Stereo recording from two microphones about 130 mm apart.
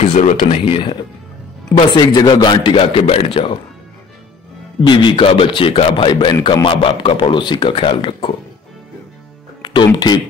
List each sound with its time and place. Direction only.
0.0 s speech: 65° left (ahead or behind)
0.5 s a man's voice: 40° left (ahead or behind)
4.8 s a man's voice: 40° left (ahead or behind)
9.6 s speech: 35° left (ahead or behind)